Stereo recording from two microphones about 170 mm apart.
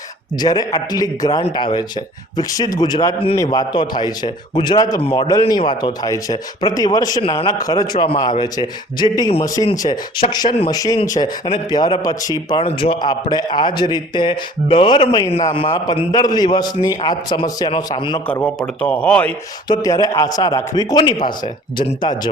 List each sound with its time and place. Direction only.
0.3 s a man's voice: 25° left (ahead or behind)
5.3 s a man's voice: 20° left (ahead or behind)
18.4 s speech: 5° left (ahead or behind)
19.6 s a man's voice: 20° left (ahead or behind)